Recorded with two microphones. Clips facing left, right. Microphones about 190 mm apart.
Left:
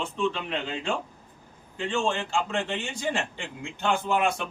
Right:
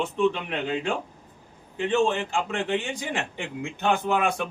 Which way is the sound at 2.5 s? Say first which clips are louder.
Right 3 dB; 55° right (ahead or behind).